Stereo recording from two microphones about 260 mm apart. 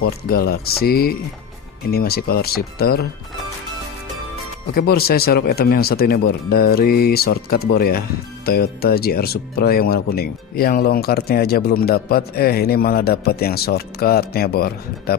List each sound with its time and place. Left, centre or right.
0.3 s speech: left
4.7 s speech: left